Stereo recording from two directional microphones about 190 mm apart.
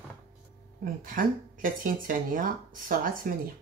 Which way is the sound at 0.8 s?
45° right (ahead or behind).